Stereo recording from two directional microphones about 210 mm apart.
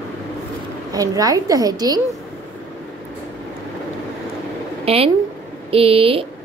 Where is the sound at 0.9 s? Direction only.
15° right (ahead or behind).